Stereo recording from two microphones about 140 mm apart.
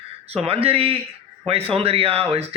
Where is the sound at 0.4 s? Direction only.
45° right (ahead or behind).